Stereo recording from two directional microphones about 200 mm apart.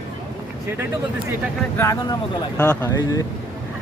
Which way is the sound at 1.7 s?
15° left (ahead or behind).